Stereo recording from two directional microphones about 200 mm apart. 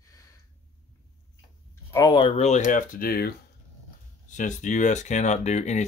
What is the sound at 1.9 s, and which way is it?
Speech, 25° left (ahead or behind).